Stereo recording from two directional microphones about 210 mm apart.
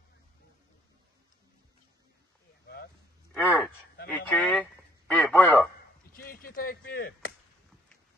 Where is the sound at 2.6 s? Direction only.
50° left (ahead or behind).